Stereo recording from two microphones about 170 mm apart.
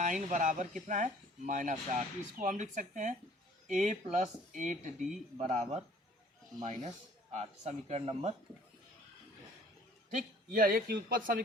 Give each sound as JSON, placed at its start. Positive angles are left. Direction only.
{"t": 0.0, "sound": "speech", "side_deg": -50}
{"t": 10.1, "sound": "speech", "side_deg": -50}